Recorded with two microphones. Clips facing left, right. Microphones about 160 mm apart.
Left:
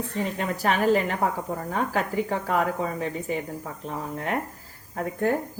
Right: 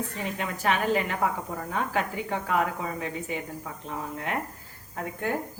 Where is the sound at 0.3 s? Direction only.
40° left (ahead or behind).